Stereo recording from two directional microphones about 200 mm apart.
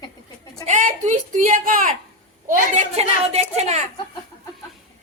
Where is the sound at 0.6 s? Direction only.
35° right (ahead or behind).